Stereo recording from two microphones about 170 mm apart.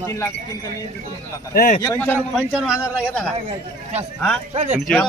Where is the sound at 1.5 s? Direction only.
50° left (ahead or behind).